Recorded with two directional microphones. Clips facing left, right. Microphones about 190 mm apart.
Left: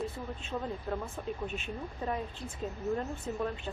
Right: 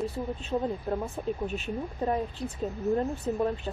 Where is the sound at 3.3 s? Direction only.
35° right (ahead or behind).